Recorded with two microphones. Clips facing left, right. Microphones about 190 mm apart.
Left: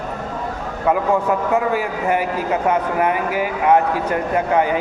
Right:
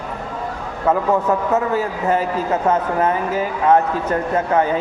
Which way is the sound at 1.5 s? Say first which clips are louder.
Even; 10° left (ahead or behind).